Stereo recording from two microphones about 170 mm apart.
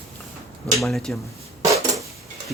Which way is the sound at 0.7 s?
Centre (ahead or behind).